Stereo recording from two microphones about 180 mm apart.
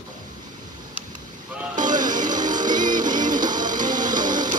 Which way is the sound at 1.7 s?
25° right (ahead or behind).